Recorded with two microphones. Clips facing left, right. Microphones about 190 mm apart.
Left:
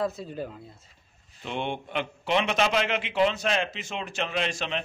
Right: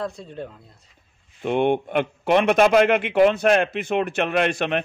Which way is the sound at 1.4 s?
55° right (ahead or behind).